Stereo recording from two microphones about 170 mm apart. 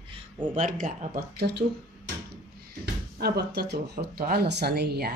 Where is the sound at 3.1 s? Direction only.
70° right (ahead or behind).